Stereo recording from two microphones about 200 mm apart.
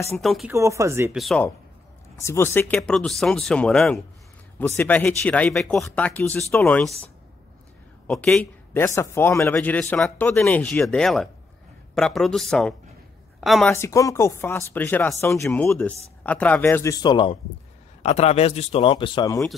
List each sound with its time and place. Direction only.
0.2 s speech: centre (ahead or behind)
0.5 s speech: 15° right (ahead or behind)
1.1 s speech: centre (ahead or behind)
2.2 s speech: 15° left (ahead or behind)
8.1 s a woman's voice: centre (ahead or behind)
13.7 s speech: 15° left (ahead or behind)